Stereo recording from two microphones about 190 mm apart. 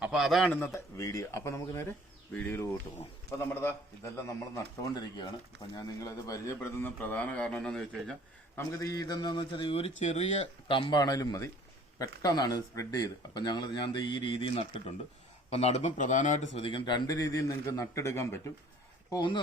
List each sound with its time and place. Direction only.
0.0 s a man's voice: centre (ahead or behind)
8.5 s speech: 15° left (ahead or behind); by 10.2 s 35° left (ahead or behind)
10.7 s speech: 25° left (ahead or behind); by 16.5 s 40° left (ahead or behind)
16.6 s a man's voice: 25° left (ahead or behind)